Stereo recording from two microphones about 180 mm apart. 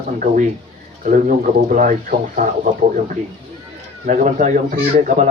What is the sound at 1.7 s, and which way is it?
Speech, 50° right (ahead or behind).